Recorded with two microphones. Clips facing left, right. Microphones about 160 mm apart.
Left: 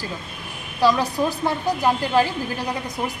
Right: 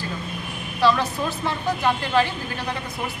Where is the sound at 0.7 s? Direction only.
35° left (ahead or behind).